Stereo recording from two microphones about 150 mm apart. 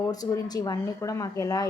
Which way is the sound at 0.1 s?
25° left (ahead or behind).